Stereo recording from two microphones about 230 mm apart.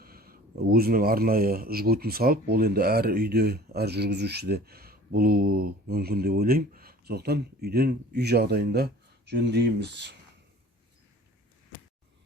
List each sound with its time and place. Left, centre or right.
0.0 s speech: right